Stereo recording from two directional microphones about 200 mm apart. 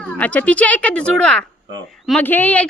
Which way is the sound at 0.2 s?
5° left (ahead or behind).